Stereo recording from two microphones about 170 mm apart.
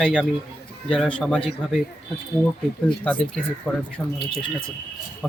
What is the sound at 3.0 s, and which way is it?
Speech, 10° left (ahead or behind).